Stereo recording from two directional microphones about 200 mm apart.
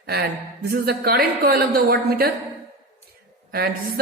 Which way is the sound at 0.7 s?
50° right (ahead or behind).